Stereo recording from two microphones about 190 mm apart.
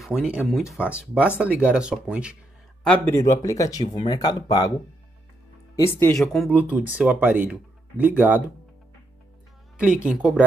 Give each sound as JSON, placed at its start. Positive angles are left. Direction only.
{"t": 0.0, "sound": "speech", "side_deg": -5}
{"t": 2.8, "sound": "speech", "side_deg": 10}
{"t": 6.1, "sound": "speech", "side_deg": 0}
{"t": 9.8, "sound": "speech", "side_deg": -5}